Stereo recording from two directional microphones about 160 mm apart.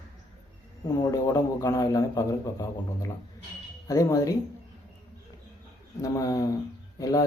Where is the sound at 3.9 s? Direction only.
20° left (ahead or behind).